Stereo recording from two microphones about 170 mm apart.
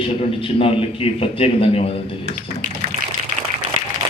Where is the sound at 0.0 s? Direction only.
35° left (ahead or behind).